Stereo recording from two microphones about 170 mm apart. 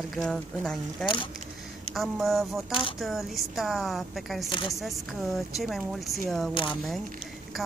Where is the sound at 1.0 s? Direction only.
30° left (ahead or behind).